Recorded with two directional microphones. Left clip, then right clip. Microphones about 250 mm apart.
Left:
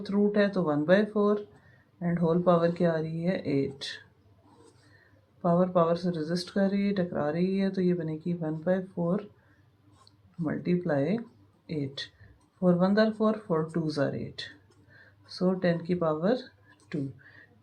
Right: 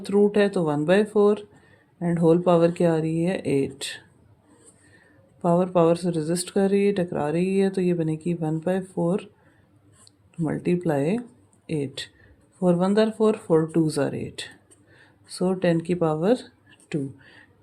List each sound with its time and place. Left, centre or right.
0.0 s speech: right
5.4 s speech: right
10.4 s speech: right